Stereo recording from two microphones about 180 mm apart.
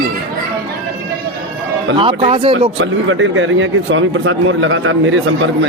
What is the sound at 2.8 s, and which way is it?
A man's voice, 90° right.